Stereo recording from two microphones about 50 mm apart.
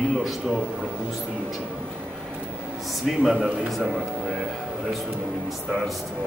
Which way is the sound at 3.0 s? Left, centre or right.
Centre.